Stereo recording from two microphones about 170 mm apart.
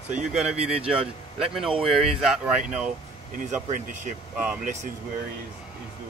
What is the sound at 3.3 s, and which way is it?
Speech, 50° right (ahead or behind).